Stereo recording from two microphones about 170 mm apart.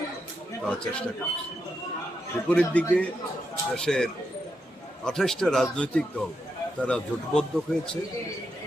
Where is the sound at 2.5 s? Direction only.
10° left (ahead or behind).